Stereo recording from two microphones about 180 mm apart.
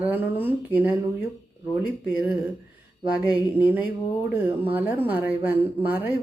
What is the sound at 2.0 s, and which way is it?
A woman's voice, 5° right (ahead or behind).